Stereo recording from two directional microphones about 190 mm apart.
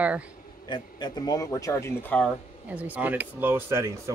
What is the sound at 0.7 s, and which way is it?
Speech, 25° left (ahead or behind).